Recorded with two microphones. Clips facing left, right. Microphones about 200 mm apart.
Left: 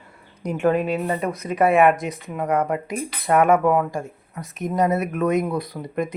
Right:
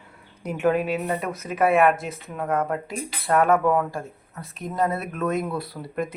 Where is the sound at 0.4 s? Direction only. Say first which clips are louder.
Left 2 dB; 5° right (ahead or behind).